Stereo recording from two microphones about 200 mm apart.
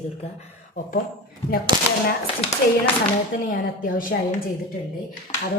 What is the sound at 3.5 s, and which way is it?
Speech, 45° left (ahead or behind).